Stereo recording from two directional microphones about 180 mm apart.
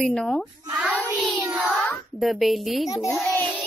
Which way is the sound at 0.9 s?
10° left (ahead or behind).